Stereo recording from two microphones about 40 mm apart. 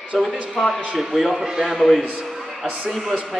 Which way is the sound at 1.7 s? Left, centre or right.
Centre.